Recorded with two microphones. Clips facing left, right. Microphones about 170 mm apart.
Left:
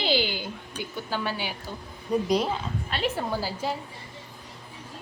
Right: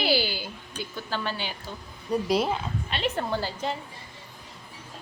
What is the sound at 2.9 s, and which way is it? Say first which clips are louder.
Speech: even; 5° left (ahead or behind).